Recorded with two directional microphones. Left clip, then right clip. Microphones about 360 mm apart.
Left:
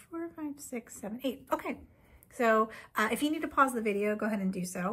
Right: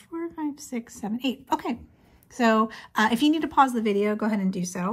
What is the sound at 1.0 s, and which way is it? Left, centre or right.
Speech, centre.